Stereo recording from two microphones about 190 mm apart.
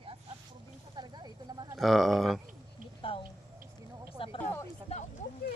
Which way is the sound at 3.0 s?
30° left (ahead or behind).